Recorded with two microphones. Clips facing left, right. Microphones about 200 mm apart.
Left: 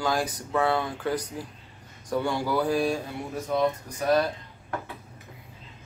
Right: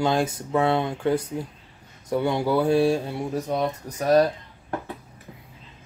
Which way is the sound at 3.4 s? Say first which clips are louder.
Even; 40° right (ahead or behind).